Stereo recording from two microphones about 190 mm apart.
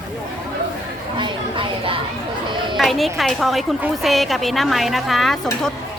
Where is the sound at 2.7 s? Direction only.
Centre (ahead or behind).